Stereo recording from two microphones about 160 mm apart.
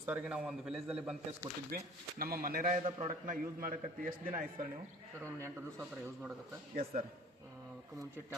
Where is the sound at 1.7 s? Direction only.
70° right (ahead or behind).